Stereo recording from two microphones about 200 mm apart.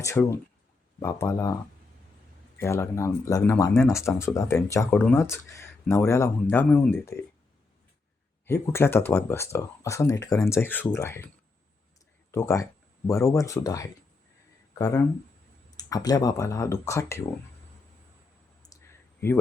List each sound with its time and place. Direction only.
0.0 s speech: 15° left (ahead or behind)
2.6 s speech: 15° left (ahead or behind)
8.4 s speech: 10° left (ahead or behind)
12.3 s speech: 15° left (ahead or behind)
18.6 s clicking: 15° left (ahead or behind)